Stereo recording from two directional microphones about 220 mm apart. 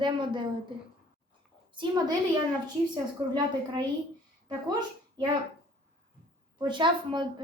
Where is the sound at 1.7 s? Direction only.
20° right (ahead or behind).